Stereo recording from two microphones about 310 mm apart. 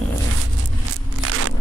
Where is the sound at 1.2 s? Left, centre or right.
Right.